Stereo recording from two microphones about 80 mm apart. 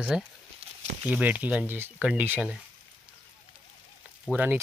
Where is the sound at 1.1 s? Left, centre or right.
Centre.